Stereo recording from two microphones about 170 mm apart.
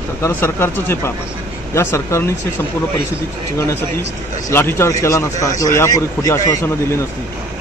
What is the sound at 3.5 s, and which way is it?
A man's voice, 15° left (ahead or behind).